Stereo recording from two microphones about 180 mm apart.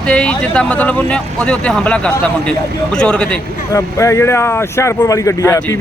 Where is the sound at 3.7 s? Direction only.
15° left (ahead or behind).